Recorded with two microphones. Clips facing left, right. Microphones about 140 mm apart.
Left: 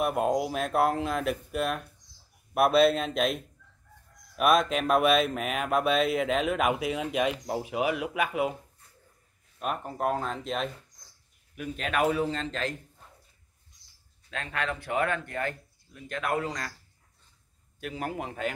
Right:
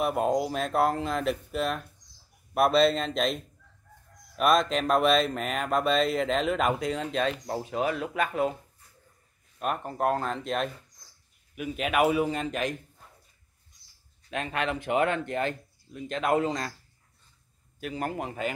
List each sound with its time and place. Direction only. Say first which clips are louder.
0.0 s speech: even; centre (ahead or behind)
9.6 s a man's voice: right 2 dB; centre (ahead or behind)
14.3 s speech: right 3 dB; 20° right (ahead or behind)
17.7 s speech: right 2 dB; centre (ahead or behind)